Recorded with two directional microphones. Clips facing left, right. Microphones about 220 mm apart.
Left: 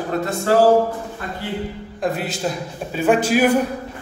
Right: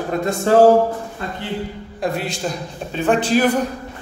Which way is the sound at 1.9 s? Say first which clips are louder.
Even; 5° left (ahead or behind).